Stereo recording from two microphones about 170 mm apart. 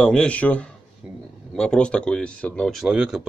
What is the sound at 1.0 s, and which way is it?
Speech, 5° right (ahead or behind).